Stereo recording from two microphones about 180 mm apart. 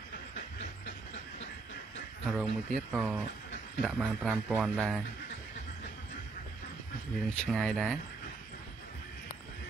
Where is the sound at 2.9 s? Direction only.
5° right (ahead or behind).